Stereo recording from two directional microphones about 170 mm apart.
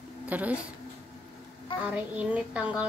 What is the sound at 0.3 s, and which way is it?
Speech, 10° right (ahead or behind).